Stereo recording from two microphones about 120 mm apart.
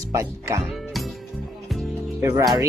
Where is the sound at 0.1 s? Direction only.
25° right (ahead or behind).